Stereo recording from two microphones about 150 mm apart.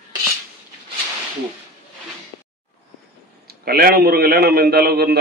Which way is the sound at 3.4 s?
90° right.